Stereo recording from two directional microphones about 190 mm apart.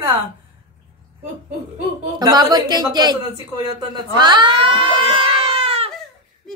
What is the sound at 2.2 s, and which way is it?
Speech, 20° right (ahead or behind).